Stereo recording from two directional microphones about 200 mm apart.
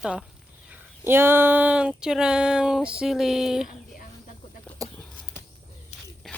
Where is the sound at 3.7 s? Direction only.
45° left (ahead or behind).